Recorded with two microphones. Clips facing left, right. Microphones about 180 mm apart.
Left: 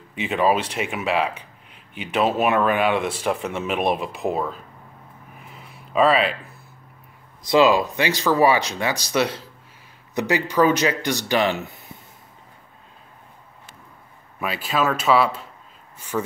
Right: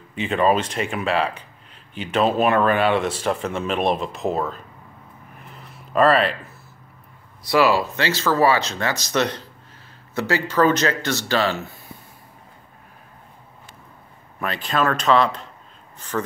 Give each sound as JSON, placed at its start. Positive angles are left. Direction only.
{"t": 0.1, "sound": "speech", "side_deg": 10}
{"t": 5.4, "sound": "a sound", "side_deg": 0}
{"t": 7.4, "sound": "speech", "side_deg": 20}
{"t": 14.4, "sound": "speech", "side_deg": 5}